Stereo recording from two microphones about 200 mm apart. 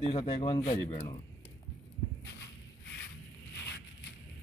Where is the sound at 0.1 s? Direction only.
30° left (ahead or behind).